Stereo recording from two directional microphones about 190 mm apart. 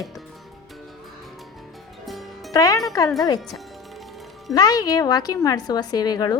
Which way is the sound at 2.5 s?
20° left (ahead or behind).